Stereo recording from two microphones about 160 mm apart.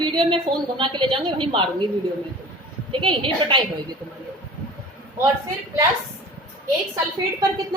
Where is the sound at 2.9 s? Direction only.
30° right (ahead or behind).